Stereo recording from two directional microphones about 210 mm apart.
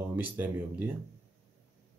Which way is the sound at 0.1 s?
10° right (ahead or behind).